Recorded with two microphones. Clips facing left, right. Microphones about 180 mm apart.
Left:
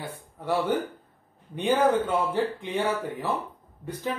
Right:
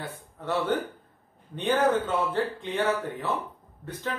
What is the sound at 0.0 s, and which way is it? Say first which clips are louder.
Speech: left 1 dB; 10° left (ahead or behind).